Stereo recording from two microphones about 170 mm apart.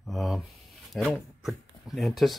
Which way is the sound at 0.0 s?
Centre (ahead or behind).